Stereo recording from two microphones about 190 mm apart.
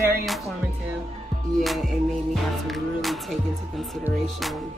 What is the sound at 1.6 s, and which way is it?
Speech, centre (ahead or behind).